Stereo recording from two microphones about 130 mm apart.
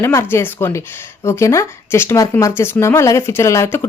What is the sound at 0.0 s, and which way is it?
Speech, 20° left (ahead or behind).